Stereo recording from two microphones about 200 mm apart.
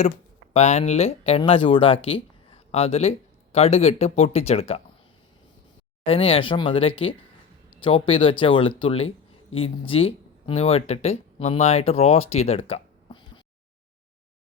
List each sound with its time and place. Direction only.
0.5 s speech: 35° left (ahead or behind)
6.1 s speech: 30° left (ahead or behind)